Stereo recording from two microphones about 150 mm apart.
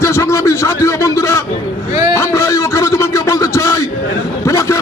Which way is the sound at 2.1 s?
20° left (ahead or behind).